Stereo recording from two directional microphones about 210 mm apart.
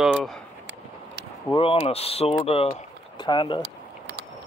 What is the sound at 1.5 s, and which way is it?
Speech, 25° left (ahead or behind).